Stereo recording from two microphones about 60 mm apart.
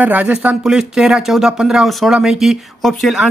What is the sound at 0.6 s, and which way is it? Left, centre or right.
Speech, centre.